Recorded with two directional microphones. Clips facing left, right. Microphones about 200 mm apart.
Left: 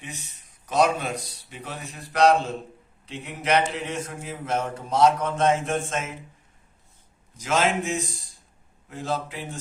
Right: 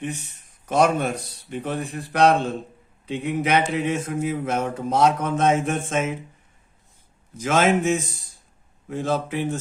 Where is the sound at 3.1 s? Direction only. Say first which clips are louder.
Right 3 dB; 55° right (ahead or behind).